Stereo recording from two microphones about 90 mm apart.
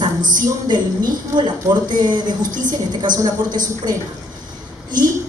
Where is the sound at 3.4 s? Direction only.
50° right (ahead or behind).